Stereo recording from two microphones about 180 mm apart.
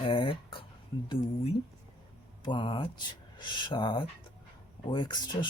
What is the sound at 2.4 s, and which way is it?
Speech, 25° left (ahead or behind).